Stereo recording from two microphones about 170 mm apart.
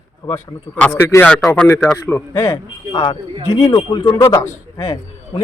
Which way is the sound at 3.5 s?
30° left (ahead or behind).